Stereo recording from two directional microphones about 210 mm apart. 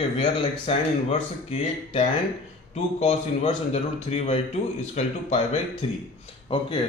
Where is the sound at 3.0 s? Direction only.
30° left (ahead or behind).